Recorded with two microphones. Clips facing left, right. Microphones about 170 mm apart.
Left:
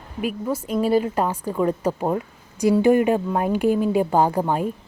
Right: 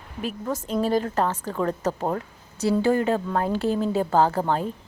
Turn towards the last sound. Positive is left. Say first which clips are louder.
# left 2 dB
turn(degrees=10)  # may be behind; listen again after turning